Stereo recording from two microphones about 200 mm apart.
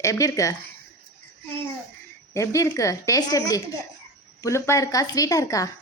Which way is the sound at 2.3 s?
15° left (ahead or behind).